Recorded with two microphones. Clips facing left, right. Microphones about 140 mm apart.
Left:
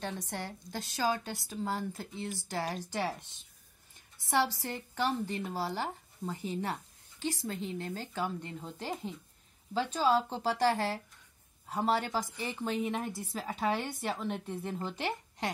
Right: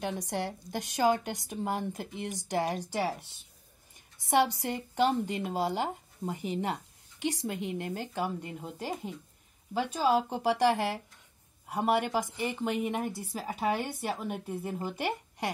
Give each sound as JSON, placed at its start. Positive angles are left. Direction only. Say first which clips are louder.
{"t": 0.0, "sound": "a woman's voice", "louder": "right 5 dB", "side_deg": -15}
{"t": 4.3, "sound": "a woman's voice", "louder": "right 4 dB", "side_deg": -15}